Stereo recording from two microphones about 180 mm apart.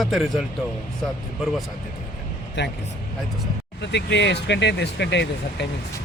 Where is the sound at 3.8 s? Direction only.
75° left (ahead or behind).